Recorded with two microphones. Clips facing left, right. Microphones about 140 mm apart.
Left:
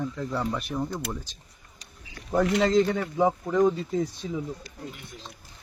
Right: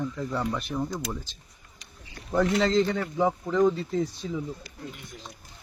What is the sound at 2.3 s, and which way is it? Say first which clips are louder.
Speech: left 1 dB; centre (ahead or behind).